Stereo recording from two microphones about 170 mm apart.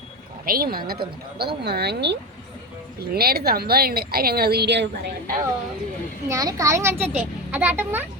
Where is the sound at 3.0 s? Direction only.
65° right (ahead or behind).